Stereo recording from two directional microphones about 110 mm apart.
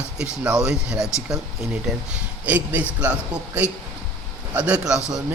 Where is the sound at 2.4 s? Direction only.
15° right (ahead or behind).